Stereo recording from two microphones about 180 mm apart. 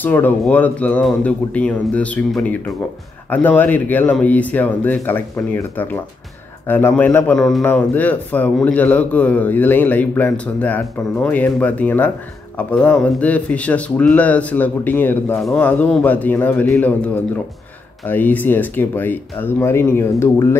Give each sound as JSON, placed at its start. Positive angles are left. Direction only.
{"t": 0.0, "sound": "a man's voice", "side_deg": 10}